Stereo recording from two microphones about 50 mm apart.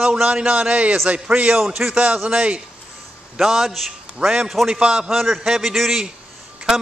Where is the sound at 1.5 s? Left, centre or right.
Centre.